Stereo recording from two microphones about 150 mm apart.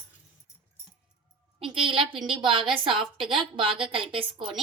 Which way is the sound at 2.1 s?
Centre (ahead or behind).